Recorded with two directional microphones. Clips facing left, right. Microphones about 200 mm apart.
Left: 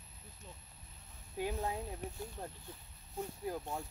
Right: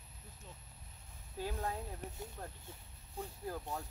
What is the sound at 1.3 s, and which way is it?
Speech, 15° left (ahead or behind).